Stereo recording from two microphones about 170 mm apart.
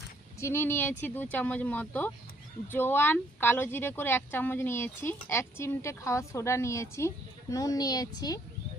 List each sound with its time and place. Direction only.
0.3 s a woman's voice: 15° left (ahead or behind)